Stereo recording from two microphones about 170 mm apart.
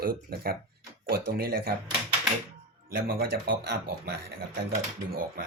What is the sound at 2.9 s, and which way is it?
Speech, 65° right (ahead or behind).